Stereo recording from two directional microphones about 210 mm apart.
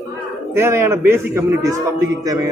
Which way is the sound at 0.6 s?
10° right (ahead or behind).